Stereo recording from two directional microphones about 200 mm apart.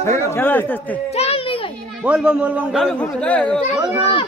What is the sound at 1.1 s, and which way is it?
Children playing, 30° left (ahead or behind).